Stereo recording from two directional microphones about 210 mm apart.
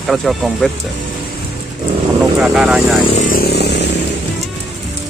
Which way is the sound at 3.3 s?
50° left (ahead or behind).